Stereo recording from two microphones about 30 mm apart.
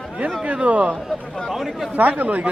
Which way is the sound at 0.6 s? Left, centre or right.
Right.